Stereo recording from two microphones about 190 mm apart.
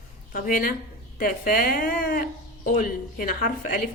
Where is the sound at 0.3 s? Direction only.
45° left (ahead or behind).